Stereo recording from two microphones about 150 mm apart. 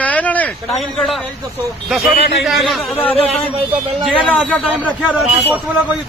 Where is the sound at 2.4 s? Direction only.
Centre (ahead or behind).